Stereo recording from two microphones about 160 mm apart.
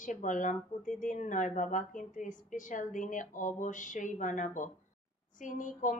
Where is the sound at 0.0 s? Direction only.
50° left (ahead or behind).